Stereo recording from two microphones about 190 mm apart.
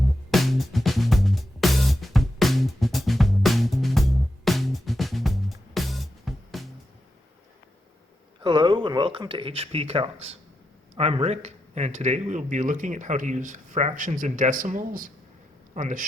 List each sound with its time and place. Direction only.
0.3 s music: centre (ahead or behind)
8.4 s speech: 25° right (ahead or behind); by 16.0 s 40° right (ahead or behind)